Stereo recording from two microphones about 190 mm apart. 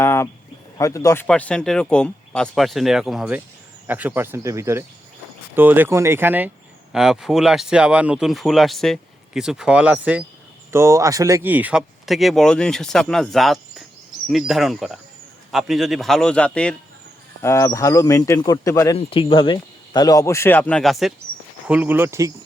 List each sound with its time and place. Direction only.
0.0 s a sound: 15° left (ahead or behind)
0.8 s speech: 15° left (ahead or behind)
18.9 s speech: 25° left (ahead or behind); by 22.3 s 15° right (ahead or behind)